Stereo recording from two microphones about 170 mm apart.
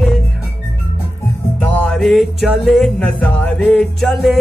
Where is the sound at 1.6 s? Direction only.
10° left (ahead or behind).